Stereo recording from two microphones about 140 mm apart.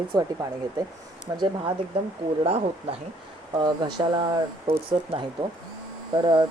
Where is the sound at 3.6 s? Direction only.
30° right (ahead or behind).